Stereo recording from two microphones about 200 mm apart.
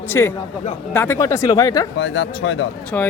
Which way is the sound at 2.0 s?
65° left (ahead or behind).